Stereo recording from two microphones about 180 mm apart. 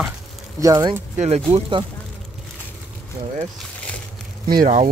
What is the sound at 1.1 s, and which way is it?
Speech, 35° right (ahead or behind).